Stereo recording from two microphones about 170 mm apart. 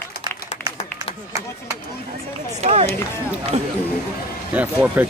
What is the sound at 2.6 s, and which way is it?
Run, 40° right (ahead or behind).